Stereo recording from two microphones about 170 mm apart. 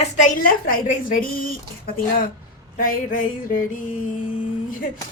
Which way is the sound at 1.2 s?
60° left (ahead or behind).